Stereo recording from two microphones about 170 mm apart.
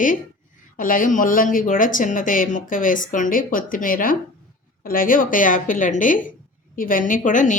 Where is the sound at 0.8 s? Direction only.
55° left (ahead or behind).